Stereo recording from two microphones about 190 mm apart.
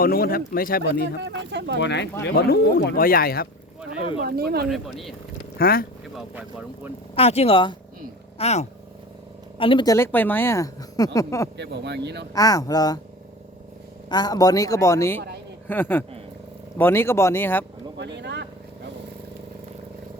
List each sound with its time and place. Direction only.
0.0 s speech: 50° left (ahead or behind)
1.2 s speech: 70° right (ahead or behind)
1.8 s speech: 65° left (ahead or behind)
4.2 s speech: 55° right (ahead or behind)
4.7 s speech: centre (ahead or behind)
5.5 s speech: 50° left (ahead or behind)
7.2 s speech: 30° left (ahead or behind); by 11.4 s 15° left (ahead or behind)
11.5 s speech: 65° right (ahead or behind)
12.3 s speech: 20° left (ahead or behind)
14.1 s speech: 20° left (ahead or behind)
17.9 s vehicle: 65° right (ahead or behind)